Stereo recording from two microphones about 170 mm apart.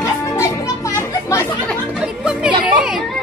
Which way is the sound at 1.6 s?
Centre (ahead or behind).